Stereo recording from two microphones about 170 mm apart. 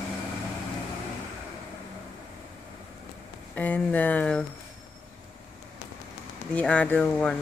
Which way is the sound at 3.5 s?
10° left (ahead or behind).